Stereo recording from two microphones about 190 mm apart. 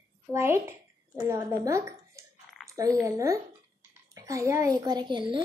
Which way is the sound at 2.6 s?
15° right (ahead or behind).